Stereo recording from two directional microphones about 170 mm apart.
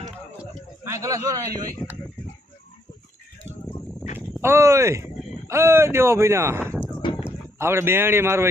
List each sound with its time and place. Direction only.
0.9 s a man's voice: 15° right (ahead or behind)
4.4 s speech: 15° right (ahead or behind)
7.6 s speech: 15° right (ahead or behind)